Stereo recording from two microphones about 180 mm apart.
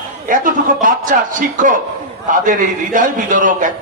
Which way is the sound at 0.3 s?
50° right (ahead or behind).